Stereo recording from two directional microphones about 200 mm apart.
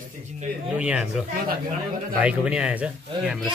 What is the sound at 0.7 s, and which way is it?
Speech, 5° right (ahead or behind).